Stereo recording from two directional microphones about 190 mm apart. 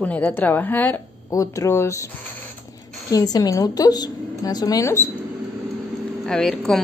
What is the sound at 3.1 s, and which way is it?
A woman's voice, 20° left (ahead or behind).